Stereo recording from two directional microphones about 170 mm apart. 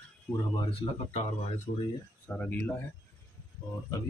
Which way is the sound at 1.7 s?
65° left (ahead or behind).